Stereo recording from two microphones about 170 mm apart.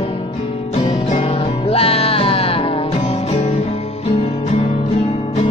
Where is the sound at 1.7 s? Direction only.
35° left (ahead or behind).